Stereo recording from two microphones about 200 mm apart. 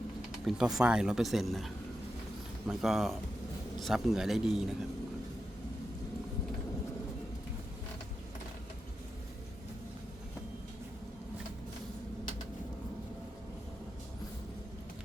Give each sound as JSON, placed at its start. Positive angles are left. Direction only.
{"t": 0.4, "sound": "speech", "side_deg": 0}